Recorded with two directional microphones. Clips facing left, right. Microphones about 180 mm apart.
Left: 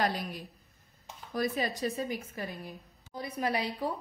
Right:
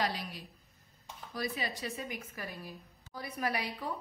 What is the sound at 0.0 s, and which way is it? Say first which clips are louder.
A woman's voice: left 4 dB; 50° left (ahead or behind).